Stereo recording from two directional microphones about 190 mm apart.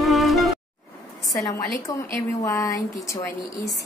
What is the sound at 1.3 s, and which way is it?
A woman's voice, 15° left (ahead or behind).